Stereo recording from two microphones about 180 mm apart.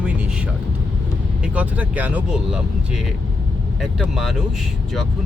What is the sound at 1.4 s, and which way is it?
Speech, 5° right (ahead or behind).